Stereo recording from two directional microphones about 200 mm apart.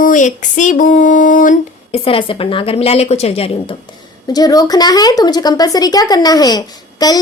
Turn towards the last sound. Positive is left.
turn(degrees=20)  # may be behind; listen again after turning